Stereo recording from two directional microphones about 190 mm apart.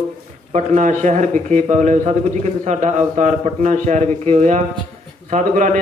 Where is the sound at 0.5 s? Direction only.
35° right (ahead or behind).